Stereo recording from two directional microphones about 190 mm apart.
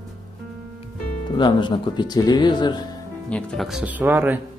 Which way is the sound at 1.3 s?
25° left (ahead or behind).